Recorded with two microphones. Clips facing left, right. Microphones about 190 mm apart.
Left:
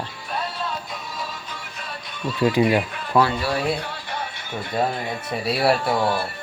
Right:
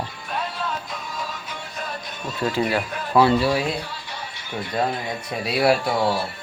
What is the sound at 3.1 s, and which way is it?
Speech, 10° right (ahead or behind).